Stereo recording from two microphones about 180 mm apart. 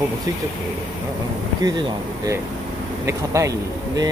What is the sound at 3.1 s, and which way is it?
Speech, 15° right (ahead or behind).